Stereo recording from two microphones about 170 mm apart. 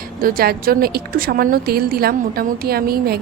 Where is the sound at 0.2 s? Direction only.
60° right (ahead or behind).